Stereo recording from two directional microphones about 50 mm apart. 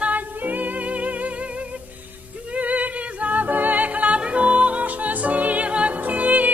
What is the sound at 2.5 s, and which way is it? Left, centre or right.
Music, right.